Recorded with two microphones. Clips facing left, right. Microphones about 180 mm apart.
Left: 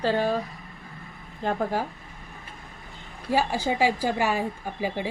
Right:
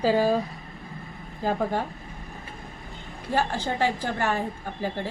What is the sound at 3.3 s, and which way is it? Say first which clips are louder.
A woman's voice: left 2 dB; 10° left (ahead or behind).